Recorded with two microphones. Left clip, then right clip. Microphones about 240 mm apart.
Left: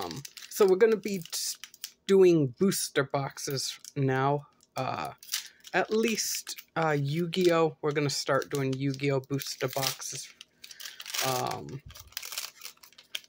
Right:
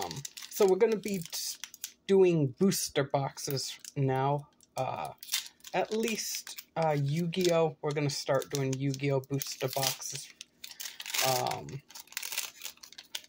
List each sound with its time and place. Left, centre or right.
0.5 s speech: centre
9.7 s speech: centre
10.6 s a sound: centre